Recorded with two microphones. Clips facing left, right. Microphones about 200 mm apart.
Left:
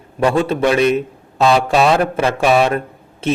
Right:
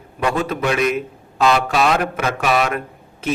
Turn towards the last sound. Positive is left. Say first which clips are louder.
# left 4 dB
turn(degrees=30)  # may be behind; listen again after turning